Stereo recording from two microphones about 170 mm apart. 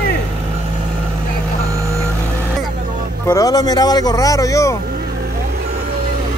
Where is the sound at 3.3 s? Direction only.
20° left (ahead or behind).